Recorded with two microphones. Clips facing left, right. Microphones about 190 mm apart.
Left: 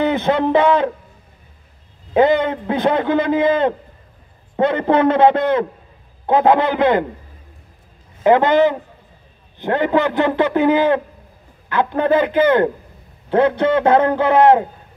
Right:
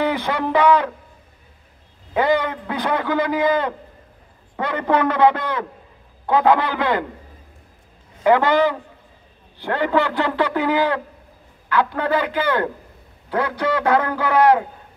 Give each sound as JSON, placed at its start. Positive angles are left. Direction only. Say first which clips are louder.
{"t": 0.0, "sound": "a man's voice", "louder": "left 5 dB", "side_deg": 25}
{"t": 2.1, "sound": "a man's voice", "louder": "left 5 dB", "side_deg": 25}
{"t": 8.2, "sound": "a man's voice", "louder": "left 3 dB", "side_deg": 20}